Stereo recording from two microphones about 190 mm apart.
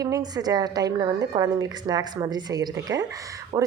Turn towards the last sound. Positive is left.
turn(degrees=-20)  # may be behind; listen again after turning